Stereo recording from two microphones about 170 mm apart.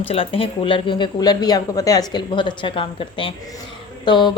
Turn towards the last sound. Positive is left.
turn(degrees=25)  # may be behind; listen again after turning